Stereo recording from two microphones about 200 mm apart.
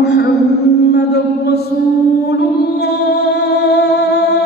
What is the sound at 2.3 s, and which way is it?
Music, 55° left (ahead or behind).